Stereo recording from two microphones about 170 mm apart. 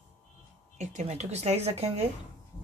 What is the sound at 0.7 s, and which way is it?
A woman's voice, 40° right (ahead or behind).